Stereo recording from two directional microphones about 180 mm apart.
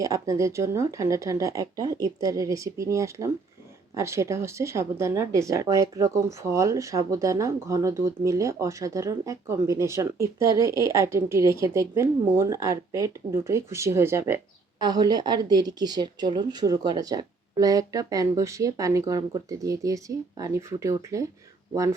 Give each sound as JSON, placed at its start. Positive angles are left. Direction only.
{"t": 0.0, "sound": "speech", "side_deg": -20}